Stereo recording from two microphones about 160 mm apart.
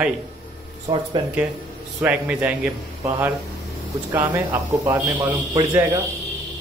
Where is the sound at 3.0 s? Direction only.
15° right (ahead or behind).